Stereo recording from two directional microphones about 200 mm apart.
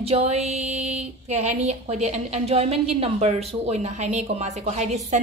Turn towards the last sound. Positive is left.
turn(degrees=-35)  # may be behind; listen again after turning